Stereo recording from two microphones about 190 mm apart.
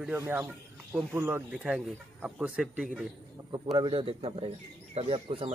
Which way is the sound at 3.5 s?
20° right (ahead or behind).